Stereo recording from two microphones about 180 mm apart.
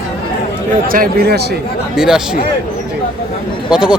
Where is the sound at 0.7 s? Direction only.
50° right (ahead or behind).